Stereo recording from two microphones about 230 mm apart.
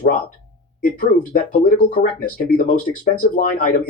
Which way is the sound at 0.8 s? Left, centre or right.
Left.